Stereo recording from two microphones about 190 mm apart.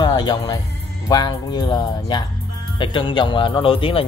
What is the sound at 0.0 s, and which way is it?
Speech, 20° left (ahead or behind).